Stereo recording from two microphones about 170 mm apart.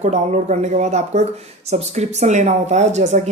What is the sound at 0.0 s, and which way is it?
Speech, 40° right (ahead or behind).